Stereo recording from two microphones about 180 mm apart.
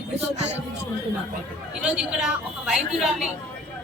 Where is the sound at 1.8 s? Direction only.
5° right (ahead or behind).